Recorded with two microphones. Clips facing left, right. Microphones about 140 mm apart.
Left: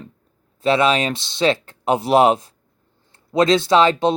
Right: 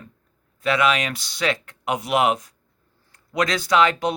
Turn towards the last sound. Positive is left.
turn(degrees=30)  # may be behind; listen again after turning